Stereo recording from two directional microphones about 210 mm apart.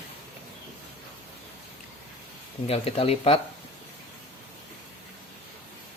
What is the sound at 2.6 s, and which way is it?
Speech, 25° left (ahead or behind).